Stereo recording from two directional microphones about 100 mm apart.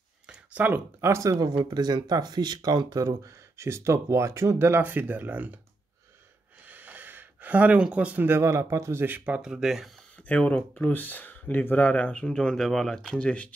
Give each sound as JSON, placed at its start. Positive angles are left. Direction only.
{"t": 0.3, "sound": "speech", "side_deg": -15}
{"t": 1.6, "sound": "speech", "side_deg": -45}
{"t": 6.6, "sound": "speech", "side_deg": -15}
{"t": 10.1, "sound": "speech", "side_deg": 15}